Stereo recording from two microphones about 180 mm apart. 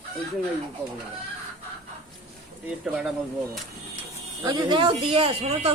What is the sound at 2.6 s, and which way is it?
Speech, 5° right (ahead or behind).